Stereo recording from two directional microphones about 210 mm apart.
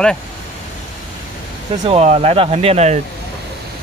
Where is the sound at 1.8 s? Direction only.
30° right (ahead or behind).